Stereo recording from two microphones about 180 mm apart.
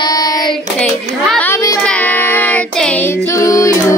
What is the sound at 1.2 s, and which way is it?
Child singing, 10° left (ahead or behind).